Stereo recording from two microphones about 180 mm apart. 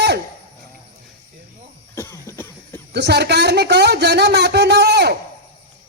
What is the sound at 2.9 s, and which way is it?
Speech, 70° right (ahead or behind).